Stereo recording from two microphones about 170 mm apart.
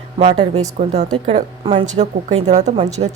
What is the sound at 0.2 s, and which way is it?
Speech, 40° right (ahead or behind).